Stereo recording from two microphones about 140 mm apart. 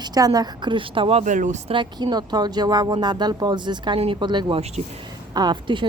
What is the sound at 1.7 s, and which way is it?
A woman's voice, 35° right (ahead or behind).